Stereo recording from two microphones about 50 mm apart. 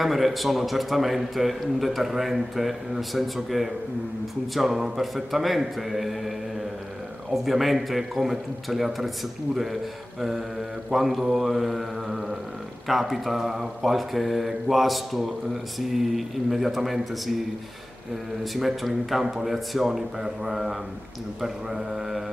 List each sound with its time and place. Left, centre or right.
0.0 s a man's voice: centre
10.9 s a man's voice: centre
18.4 s a man's voice: centre
20.4 s mantra: centre